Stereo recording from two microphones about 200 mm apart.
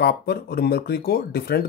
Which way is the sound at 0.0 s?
50° left (ahead or behind).